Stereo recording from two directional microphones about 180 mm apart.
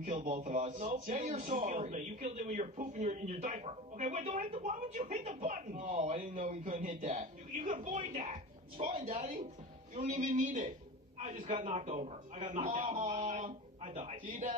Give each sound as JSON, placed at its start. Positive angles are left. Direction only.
{"t": 0.0, "sound": "speech", "side_deg": -45}
{"t": 1.2, "sound": "a man's voice", "side_deg": -30}
{"t": 1.7, "sound": "speech", "side_deg": -45}
{"t": 9.1, "sound": "a man's voice", "side_deg": -40}